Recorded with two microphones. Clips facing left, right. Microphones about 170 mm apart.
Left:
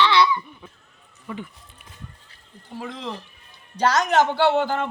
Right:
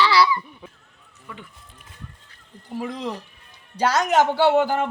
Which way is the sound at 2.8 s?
10° right (ahead or behind).